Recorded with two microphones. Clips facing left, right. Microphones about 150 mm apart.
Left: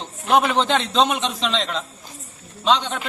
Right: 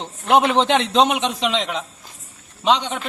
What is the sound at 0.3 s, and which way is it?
A man's voice, 25° right (ahead or behind).